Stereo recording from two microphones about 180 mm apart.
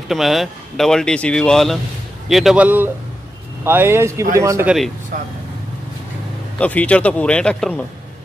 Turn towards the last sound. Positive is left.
turn(degrees=5)  # may be behind; listen again after turning